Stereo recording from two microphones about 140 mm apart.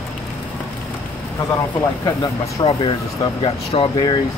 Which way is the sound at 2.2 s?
35° left (ahead or behind).